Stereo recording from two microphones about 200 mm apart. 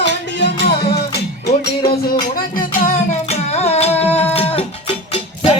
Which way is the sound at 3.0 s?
35° left (ahead or behind).